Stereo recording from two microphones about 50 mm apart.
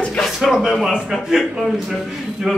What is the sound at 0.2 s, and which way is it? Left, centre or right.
Speech, centre.